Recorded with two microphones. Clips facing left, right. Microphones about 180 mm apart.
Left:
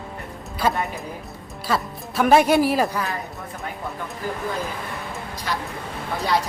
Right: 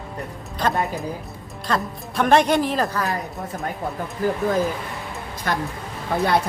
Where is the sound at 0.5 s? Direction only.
10° left (ahead or behind).